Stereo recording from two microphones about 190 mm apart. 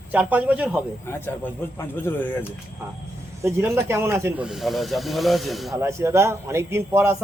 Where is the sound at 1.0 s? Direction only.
10° left (ahead or behind).